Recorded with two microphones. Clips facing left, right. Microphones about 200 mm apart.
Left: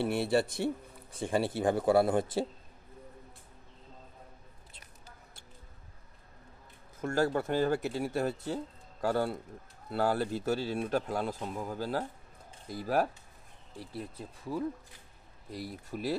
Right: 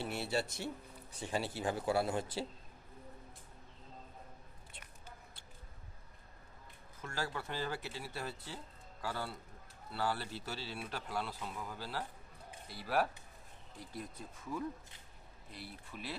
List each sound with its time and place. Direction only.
0.0 s speech: 55° left (ahead or behind)
7.0 s speech: 45° left (ahead or behind)
13.7 s speech: 30° left (ahead or behind)